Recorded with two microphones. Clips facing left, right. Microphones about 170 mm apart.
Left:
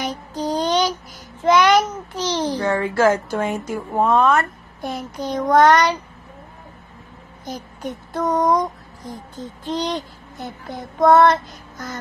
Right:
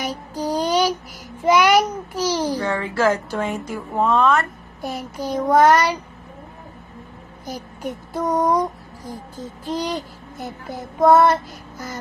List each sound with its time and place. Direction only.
0.0 s child singing: 10° right (ahead or behind)
1.4 s a sound: 10° right (ahead or behind)
2.7 s a woman's voice: 40° left (ahead or behind)
3.4 s speech: centre (ahead or behind)
4.8 s child singing: 5° right (ahead or behind)
7.4 s child singing: 10° right (ahead or behind)
9.7 s child singing: 10° right (ahead or behind)